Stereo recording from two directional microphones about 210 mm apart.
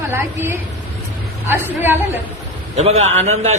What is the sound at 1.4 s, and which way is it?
Speech, 10° right (ahead or behind).